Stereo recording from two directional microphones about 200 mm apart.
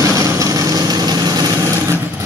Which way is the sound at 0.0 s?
15° right (ahead or behind).